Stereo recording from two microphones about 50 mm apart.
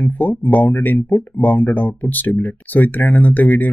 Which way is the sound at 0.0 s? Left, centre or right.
Left.